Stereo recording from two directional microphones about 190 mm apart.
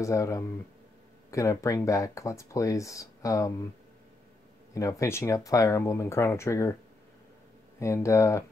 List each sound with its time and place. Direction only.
0.0 s speech: 15° left (ahead or behind)
4.7 s speech: 15° left (ahead or behind)
7.8 s speech: 15° left (ahead or behind)